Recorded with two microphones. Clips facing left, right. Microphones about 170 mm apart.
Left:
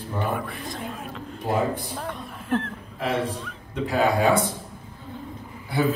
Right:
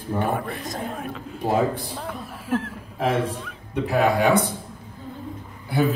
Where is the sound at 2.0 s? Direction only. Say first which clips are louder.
Even; 5° right (ahead or behind).